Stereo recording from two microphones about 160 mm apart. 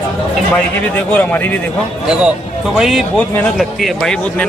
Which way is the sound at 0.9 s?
10° left (ahead or behind).